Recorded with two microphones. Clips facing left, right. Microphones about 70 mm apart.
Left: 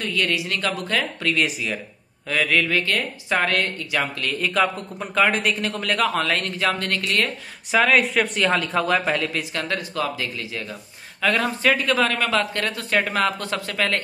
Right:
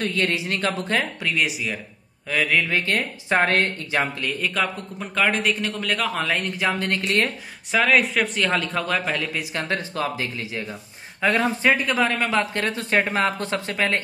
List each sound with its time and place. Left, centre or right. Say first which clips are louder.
0.1 s speech: even; right
1.2 s a man's voice: left 1 dB; centre
2.6 s speech: left 1 dB; right
4.4 s a man's voice: left 5 dB; centre
6.2 s speech: left 1 dB; centre
7.7 s a man's voice: left 1 dB; centre
9.4 s speech: even; right